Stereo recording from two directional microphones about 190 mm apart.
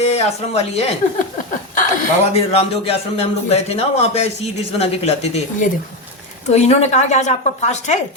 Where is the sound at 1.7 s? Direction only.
45° left (ahead or behind).